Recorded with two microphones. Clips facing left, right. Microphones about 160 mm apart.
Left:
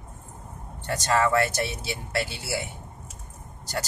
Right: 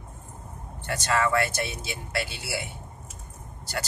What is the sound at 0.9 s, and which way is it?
A man's voice, 40° left (ahead or behind).